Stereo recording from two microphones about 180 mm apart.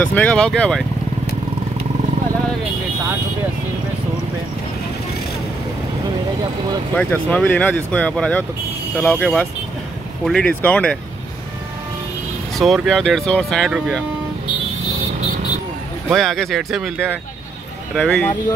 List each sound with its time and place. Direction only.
0.0 s speech: 10° left (ahead or behind)
7.0 s speech: 10° left (ahead or behind)
12.5 s speech: centre (ahead or behind)
16.1 s speech: centre (ahead or behind)